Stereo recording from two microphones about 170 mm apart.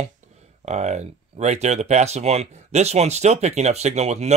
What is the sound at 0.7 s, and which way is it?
Speech, 40° right (ahead or behind).